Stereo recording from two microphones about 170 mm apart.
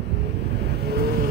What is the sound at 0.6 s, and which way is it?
Vehicle, 80° right.